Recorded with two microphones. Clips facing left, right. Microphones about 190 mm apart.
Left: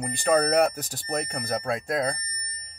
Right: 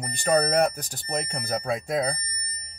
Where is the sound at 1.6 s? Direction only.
Centre (ahead or behind).